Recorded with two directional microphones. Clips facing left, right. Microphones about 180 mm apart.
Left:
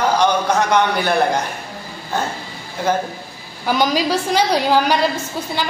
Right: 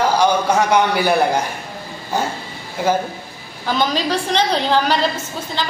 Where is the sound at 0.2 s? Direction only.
10° right (ahead or behind).